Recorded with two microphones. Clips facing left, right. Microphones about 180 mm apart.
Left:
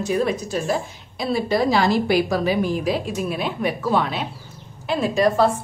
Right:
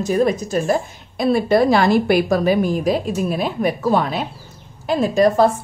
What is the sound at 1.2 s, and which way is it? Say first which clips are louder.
Speech: right 5 dB; 55° right (ahead or behind).